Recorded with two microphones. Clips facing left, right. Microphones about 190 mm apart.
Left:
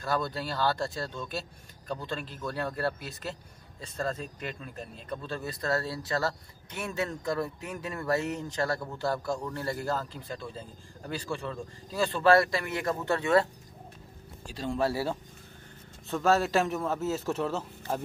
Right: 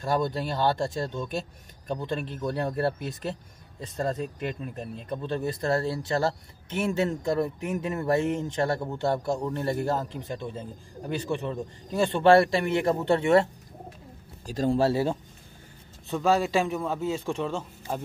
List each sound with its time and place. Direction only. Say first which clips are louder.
0.0 s speech: right 4 dB; 20° right (ahead or behind)
14.4 s speech: right 9 dB; 40° right (ahead or behind)
14.8 s speech: right 2 dB; 25° right (ahead or behind)
16.1 s speech: right 1 dB; centre (ahead or behind)